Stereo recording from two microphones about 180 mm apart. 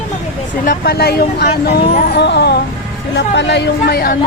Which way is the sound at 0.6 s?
55° left (ahead or behind).